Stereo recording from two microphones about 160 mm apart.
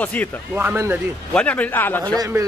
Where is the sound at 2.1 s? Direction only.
20° right (ahead or behind).